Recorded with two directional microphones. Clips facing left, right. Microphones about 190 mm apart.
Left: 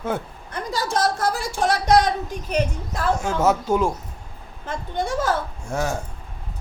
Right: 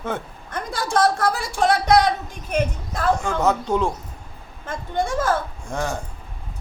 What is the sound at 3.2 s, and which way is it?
Speech, 5° left (ahead or behind).